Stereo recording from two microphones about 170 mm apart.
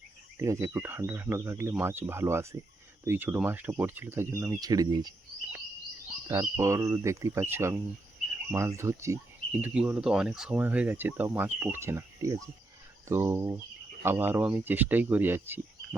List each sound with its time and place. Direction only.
0.3 s speech: 15° right (ahead or behind)
6.2 s speech: 20° right (ahead or behind)